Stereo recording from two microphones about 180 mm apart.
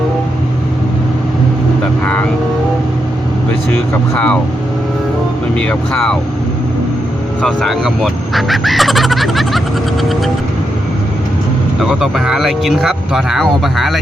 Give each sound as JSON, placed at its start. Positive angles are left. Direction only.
{"t": 4.1, "sound": "speech", "side_deg": 5}
{"t": 5.5, "sound": "speech", "side_deg": 5}
{"t": 7.4, "sound": "speech", "side_deg": 0}
{"t": 11.8, "sound": "speech", "side_deg": 0}